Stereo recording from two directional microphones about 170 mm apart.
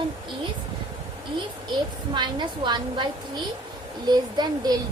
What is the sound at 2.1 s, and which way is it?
Speech, 25° right (ahead or behind).